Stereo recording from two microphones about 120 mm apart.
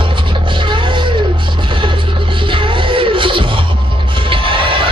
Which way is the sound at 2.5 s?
45° right (ahead or behind).